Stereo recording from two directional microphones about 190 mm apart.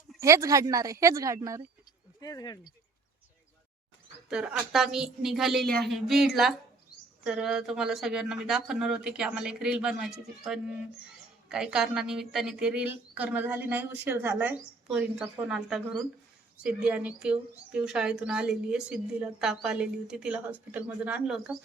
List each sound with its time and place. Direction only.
0.2 s speech: 15° right (ahead or behind)
2.2 s speech: 20° left (ahead or behind)
4.3 s a woman's voice: 5° right (ahead or behind)